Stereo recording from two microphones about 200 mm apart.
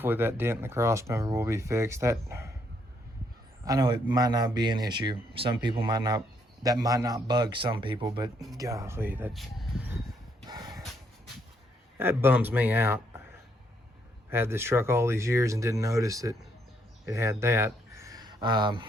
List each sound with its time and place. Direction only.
0.0 s speech: 10° right (ahead or behind)
3.7 s speech: 20° right (ahead or behind)
10.4 s a sound: 20° right (ahead or behind)
11.9 s speech: 10° right (ahead or behind)
14.3 s speech: 10° right (ahead or behind)